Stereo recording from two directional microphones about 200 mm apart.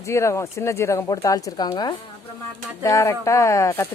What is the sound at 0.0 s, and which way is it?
Speech, 15° left (ahead or behind).